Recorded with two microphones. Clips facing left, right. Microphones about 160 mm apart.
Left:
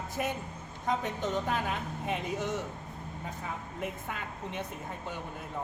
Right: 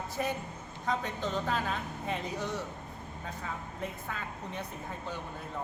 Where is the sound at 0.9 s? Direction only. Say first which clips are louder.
Left 2 dB; 20° left (ahead or behind).